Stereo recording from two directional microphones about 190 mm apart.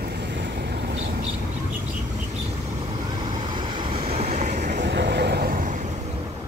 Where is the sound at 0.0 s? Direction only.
60° right (ahead or behind).